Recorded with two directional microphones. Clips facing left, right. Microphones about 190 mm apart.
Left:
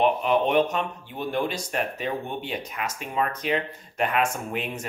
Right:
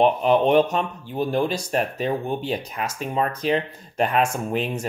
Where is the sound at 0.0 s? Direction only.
35° right (ahead or behind).